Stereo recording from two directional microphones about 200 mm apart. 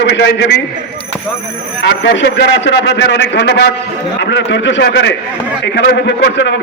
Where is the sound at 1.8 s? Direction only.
60° left (ahead or behind).